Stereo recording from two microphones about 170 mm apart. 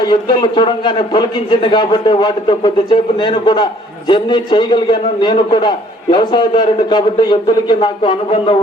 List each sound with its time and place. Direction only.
0.0 s a man's voice: 25° left (ahead or behind)